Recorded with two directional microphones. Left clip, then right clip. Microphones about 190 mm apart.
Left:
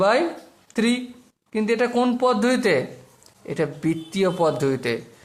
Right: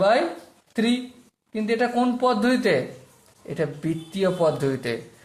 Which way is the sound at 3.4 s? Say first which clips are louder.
Left 3 dB; 20° left (ahead or behind).